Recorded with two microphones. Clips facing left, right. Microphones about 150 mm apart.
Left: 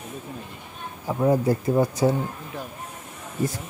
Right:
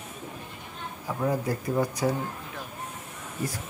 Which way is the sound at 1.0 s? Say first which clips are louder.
Left 7 dB; 25° left (ahead or behind).